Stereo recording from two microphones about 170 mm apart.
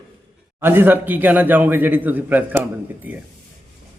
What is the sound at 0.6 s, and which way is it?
A man's voice, 10° right (ahead or behind).